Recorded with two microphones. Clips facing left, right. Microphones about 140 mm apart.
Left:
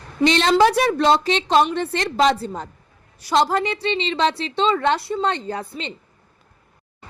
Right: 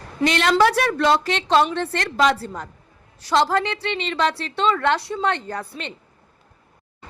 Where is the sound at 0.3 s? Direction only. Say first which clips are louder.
Left 2 dB; 25° left (ahead or behind).